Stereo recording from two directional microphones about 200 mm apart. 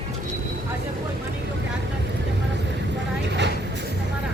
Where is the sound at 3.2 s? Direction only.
60° right (ahead or behind).